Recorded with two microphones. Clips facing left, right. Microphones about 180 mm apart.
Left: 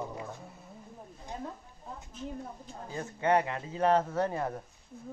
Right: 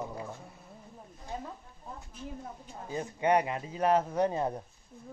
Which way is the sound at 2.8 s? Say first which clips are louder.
Right 1 dB; 15° right (ahead or behind).